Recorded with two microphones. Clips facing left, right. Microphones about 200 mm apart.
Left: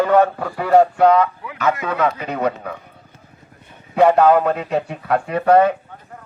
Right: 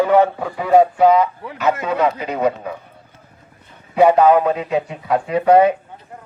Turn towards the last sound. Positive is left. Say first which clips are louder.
# right 1 dB
turn(degrees=-15)  # may be behind; listen again after turning